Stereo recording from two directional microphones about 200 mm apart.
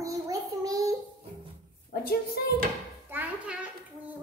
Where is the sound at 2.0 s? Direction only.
50° left (ahead or behind).